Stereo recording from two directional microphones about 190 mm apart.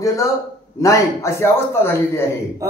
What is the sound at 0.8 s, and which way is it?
A man's voice, 15° left (ahead or behind).